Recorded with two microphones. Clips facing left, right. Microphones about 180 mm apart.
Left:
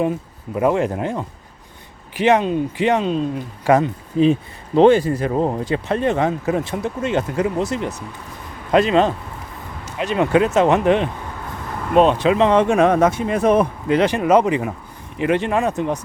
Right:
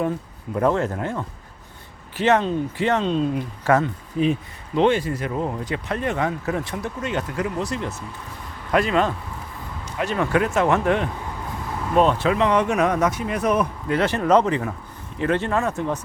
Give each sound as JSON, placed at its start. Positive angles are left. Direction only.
{"t": 0.5, "sound": "speech", "side_deg": 10}
{"t": 3.6, "sound": "speech", "side_deg": 15}
{"t": 4.2, "sound": "speech", "side_deg": 30}